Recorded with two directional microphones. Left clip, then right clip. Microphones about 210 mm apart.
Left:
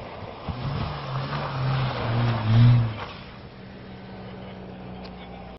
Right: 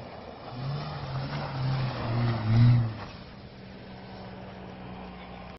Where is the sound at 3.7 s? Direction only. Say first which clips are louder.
Left 1 dB; 45° left (ahead or behind).